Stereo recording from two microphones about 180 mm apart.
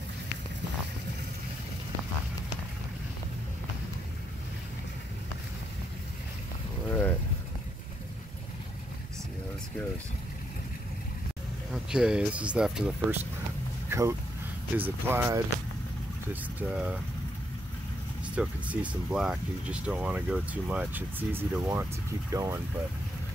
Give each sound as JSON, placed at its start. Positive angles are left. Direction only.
{"t": 6.9, "sound": "vehicle", "side_deg": 10}
{"t": 11.7, "sound": "speech", "side_deg": -5}
{"t": 13.8, "sound": "vehicle", "side_deg": -15}
{"t": 14.8, "sound": "speech", "side_deg": -10}
{"t": 16.5, "sound": "speech", "side_deg": -5}
{"t": 18.2, "sound": "speech", "side_deg": -5}